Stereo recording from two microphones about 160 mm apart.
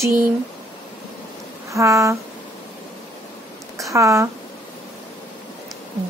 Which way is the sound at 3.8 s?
20° right (ahead or behind).